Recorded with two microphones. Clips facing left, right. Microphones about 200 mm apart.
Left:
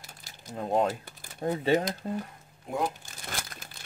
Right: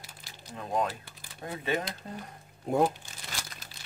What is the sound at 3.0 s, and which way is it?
Crumpling, 50° left (ahead or behind).